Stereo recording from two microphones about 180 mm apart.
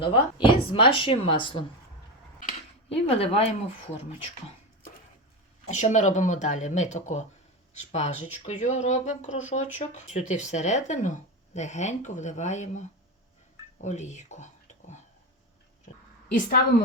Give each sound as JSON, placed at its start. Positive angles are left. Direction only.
{"t": 0.0, "sound": "speech", "side_deg": 30}
{"t": 2.9, "sound": "speech", "side_deg": 35}
{"t": 5.6, "sound": "speech", "side_deg": 40}
{"t": 16.3, "sound": "a woman's voice", "side_deg": 55}